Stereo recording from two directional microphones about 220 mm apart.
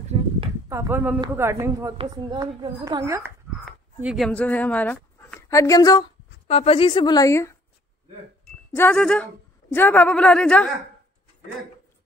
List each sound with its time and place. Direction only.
0.7 s speech: 10° right (ahead or behind); by 7.5 s 15° left (ahead or behind)
8.7 s a woman's voice: 5° left (ahead or behind)